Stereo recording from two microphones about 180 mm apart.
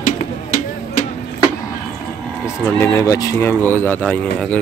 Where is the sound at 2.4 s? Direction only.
15° left (ahead or behind).